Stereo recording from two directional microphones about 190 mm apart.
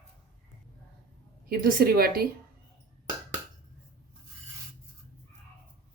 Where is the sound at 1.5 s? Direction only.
50° right (ahead or behind).